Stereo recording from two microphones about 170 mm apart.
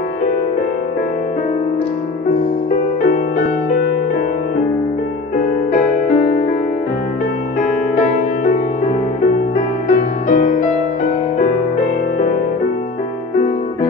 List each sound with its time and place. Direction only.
2.7 s music: 50° left (ahead or behind)
5.7 s music: 50° left (ahead or behind)
7.6 s music: 50° left (ahead or behind)